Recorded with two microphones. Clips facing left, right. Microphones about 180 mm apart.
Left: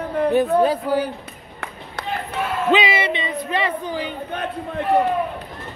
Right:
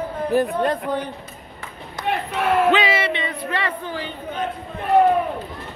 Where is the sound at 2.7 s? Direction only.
15° left (ahead or behind).